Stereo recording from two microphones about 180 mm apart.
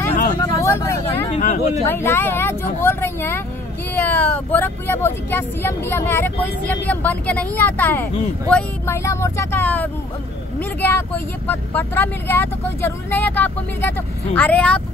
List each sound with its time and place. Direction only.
0.4 s vehicle: 15° left (ahead or behind)
1.3 s a sound: 40° left (ahead or behind)
1.9 s speech: 15° left (ahead or behind)